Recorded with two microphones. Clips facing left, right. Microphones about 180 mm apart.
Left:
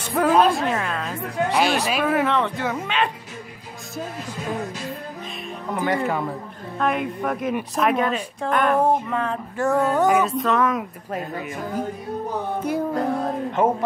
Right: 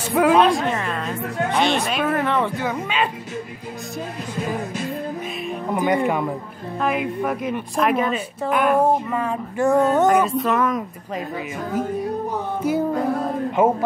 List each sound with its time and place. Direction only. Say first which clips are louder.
0.1 s speech: right 2 dB; centre (ahead or behind)
5.8 s speech: right 3 dB; 15° right (ahead or behind)
6.8 s speech: right 1 dB; 5° right (ahead or behind); by 10.0 s 20° right (ahead or behind)
10.0 s speech: right 2 dB; centre (ahead or behind)
12.6 s music: right 4 dB; 5° right (ahead or behind)
13.6 s speech: right 2 dB; 10° right (ahead or behind)